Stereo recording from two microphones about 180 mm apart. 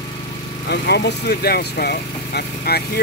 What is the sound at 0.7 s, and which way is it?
Speech, 65° left (ahead or behind).